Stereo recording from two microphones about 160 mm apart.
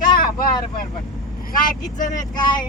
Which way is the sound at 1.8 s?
55° left (ahead or behind).